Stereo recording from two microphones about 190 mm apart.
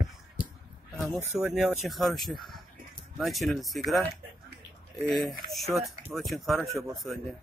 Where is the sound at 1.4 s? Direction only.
Centre (ahead or behind).